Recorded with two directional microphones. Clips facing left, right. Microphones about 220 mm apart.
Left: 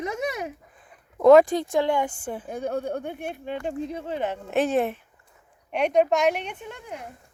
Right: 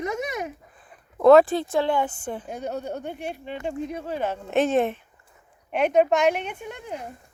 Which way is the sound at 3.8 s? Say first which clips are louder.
Even; 25° left (ahead or behind).